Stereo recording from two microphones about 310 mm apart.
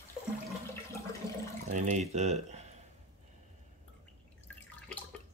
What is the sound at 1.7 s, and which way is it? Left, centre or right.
Speech, right.